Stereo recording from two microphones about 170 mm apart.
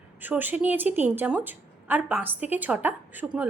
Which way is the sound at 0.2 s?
10° right (ahead or behind).